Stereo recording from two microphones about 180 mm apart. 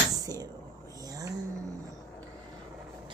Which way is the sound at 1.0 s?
20° right (ahead or behind).